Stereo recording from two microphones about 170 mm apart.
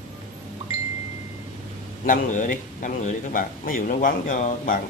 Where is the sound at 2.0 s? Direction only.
50° left (ahead or behind).